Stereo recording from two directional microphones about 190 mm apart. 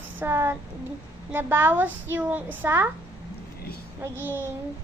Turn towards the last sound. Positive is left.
turn(degrees=-10)  # may be behind; listen again after turning